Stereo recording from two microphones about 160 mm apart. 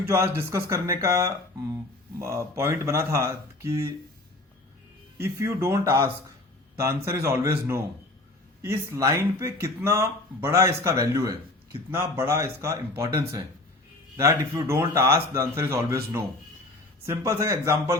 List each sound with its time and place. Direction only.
0.1 s speech: 20° right (ahead or behind)
5.1 s speech: 15° right (ahead or behind)
14.2 s speech: 15° right (ahead or behind)